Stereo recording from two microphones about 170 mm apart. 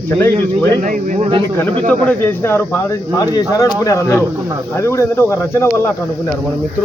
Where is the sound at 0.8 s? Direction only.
50° right (ahead or behind).